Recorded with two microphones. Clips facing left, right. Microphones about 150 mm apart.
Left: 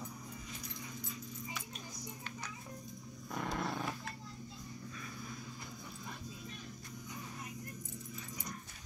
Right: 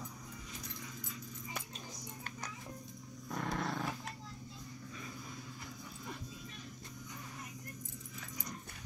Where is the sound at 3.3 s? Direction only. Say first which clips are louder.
Even; 5° left (ahead or behind).